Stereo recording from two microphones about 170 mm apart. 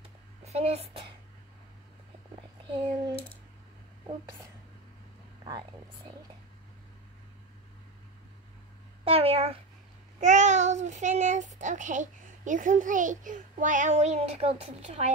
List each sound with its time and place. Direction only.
0.4 s a child's voice: 40° right (ahead or behind)
2.7 s a sound: 30° right (ahead or behind)
9.0 s a child's voice: 35° right (ahead or behind)